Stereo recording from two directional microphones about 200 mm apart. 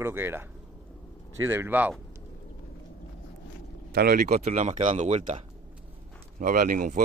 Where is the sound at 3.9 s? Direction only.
50° right (ahead or behind).